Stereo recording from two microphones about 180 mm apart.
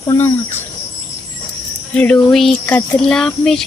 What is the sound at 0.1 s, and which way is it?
Speech, 15° left (ahead or behind).